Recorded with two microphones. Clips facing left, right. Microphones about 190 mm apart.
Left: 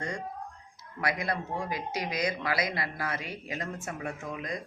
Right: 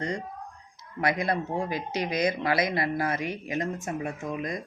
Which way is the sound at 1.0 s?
25° right (ahead or behind).